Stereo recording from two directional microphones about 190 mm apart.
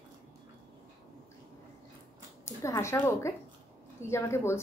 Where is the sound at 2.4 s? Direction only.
15° left (ahead or behind).